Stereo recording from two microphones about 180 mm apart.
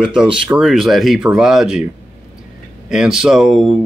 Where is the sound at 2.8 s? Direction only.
5° right (ahead or behind).